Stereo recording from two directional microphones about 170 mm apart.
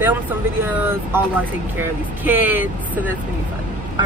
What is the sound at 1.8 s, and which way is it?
Speech, 10° right (ahead or behind).